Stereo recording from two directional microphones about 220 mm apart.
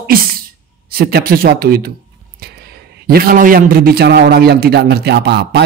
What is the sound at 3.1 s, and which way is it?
A man's voice, 40° right (ahead or behind).